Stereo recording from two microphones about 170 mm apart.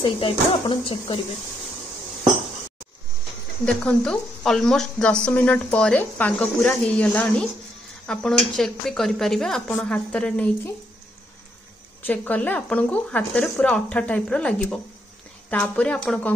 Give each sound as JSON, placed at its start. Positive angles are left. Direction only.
{"t": 0.0, "sound": "speech", "side_deg": 30}
{"t": 3.6, "sound": "speech", "side_deg": 5}
{"t": 12.1, "sound": "speech", "side_deg": 10}